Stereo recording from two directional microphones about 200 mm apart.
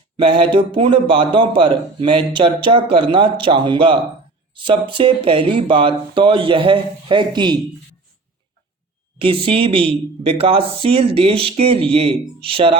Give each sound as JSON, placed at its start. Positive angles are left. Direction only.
{"t": 0.2, "sound": "speech", "side_deg": -25}
{"t": 9.1, "sound": "speech", "side_deg": -25}